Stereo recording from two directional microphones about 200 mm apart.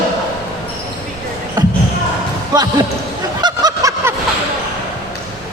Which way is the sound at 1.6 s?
20° right (ahead or behind).